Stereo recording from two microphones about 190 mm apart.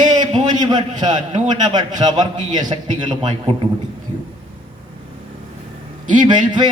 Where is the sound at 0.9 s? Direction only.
40° right (ahead or behind).